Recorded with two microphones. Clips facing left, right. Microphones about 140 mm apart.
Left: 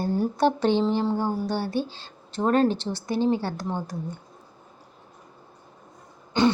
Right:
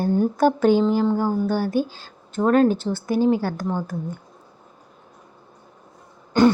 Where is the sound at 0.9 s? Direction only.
25° left (ahead or behind).